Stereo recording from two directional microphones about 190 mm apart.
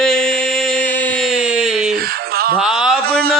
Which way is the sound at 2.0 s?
50° right (ahead or behind).